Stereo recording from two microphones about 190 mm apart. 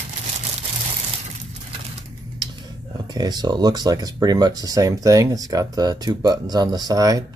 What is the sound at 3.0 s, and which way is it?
Speech, 20° right (ahead or behind).